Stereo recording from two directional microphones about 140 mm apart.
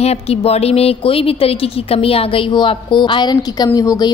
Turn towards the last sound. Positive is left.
turn(degrees=25)  # may be behind; listen again after turning